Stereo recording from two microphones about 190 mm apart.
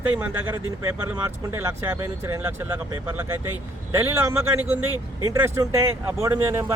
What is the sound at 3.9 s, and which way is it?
Speech, 10° right (ahead or behind).